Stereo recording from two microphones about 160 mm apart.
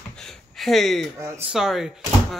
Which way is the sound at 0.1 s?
5° left (ahead or behind).